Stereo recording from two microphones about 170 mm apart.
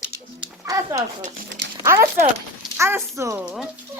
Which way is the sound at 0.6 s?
15° right (ahead or behind).